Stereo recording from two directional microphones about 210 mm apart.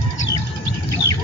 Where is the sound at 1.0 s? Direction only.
50° right (ahead or behind).